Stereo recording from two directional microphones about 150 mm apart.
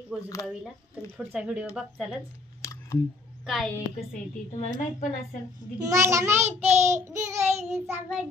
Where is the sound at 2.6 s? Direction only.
20° left (ahead or behind).